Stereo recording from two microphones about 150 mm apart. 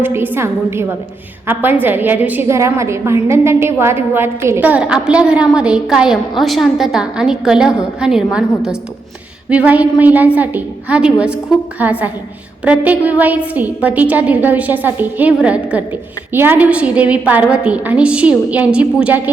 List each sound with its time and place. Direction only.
0.0 s a woman's voice: 15° right (ahead or behind)